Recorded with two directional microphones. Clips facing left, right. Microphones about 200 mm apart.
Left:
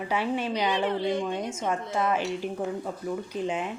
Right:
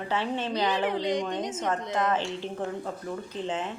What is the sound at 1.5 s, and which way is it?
A woman's voice, 10° left (ahead or behind).